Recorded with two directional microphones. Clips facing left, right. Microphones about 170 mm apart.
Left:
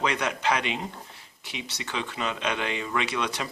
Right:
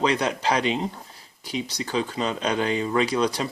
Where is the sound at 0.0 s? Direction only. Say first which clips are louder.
Right 4 dB; 30° right (ahead or behind).